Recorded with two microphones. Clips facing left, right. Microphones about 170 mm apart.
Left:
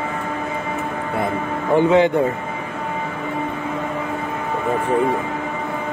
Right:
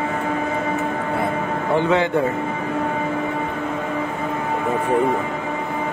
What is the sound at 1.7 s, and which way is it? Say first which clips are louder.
Speech: left 5 dB; 15° left (ahead or behind).